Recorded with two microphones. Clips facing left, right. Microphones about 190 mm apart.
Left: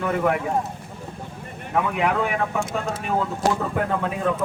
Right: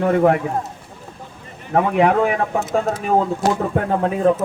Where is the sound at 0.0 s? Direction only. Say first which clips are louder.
Right 7 dB; 40° right (ahead or behind).